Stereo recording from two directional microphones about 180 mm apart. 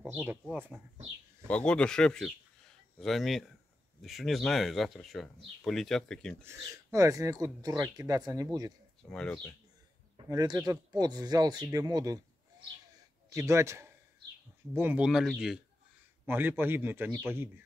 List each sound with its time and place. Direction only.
0.0 s speech: 10° right (ahead or behind)
1.5 s speech: 5° left (ahead or behind)
6.4 s speech: 15° right (ahead or behind)
9.1 s speech: 5° left (ahead or behind)
10.1 s speech: 20° right (ahead or behind)